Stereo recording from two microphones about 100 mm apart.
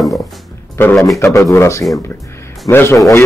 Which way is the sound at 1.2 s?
30° left (ahead or behind).